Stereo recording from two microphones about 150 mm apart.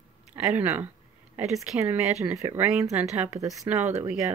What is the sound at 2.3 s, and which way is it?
Speech, 20° right (ahead or behind).